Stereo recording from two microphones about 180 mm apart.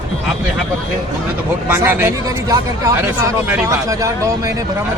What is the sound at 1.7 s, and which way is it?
Speech, 10° right (ahead or behind).